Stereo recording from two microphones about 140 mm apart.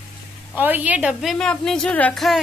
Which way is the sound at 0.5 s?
15° right (ahead or behind).